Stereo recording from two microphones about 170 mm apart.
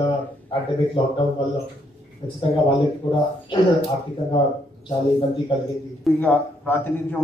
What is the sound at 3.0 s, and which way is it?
Speech, 30° left (ahead or behind).